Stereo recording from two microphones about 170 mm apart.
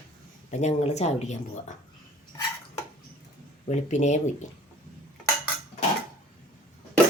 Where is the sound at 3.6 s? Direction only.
45° left (ahead or behind).